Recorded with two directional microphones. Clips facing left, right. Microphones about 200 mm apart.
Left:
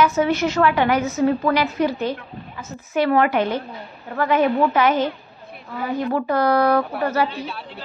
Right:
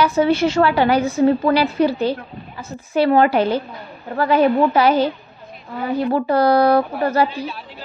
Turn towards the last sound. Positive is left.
turn(degrees=-30)  # may be behind; listen again after turning